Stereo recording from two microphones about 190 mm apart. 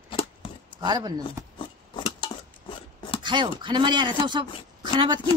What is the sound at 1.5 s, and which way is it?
Chopping, 25° left (ahead or behind).